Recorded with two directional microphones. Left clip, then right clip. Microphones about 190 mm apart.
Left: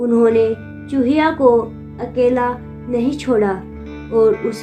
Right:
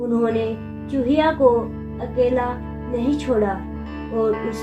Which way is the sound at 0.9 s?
45° left (ahead or behind).